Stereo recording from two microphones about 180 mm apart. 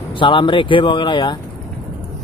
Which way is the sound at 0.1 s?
30° left (ahead or behind).